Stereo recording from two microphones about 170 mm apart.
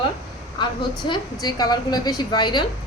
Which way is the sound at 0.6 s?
25° left (ahead or behind).